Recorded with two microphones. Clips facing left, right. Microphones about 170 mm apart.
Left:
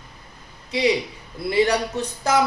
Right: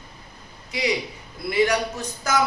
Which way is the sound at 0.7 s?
30° left (ahead or behind).